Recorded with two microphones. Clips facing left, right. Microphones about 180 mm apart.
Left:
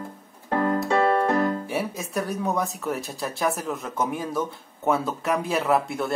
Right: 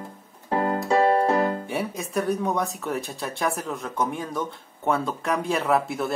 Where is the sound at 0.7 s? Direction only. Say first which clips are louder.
Right 2 dB; 35° right (ahead or behind).